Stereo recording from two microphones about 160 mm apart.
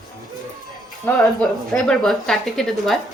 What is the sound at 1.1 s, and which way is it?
A woman's voice, 5° left (ahead or behind).